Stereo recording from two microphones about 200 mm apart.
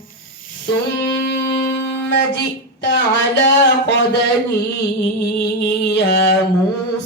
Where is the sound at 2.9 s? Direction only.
60° left (ahead or behind).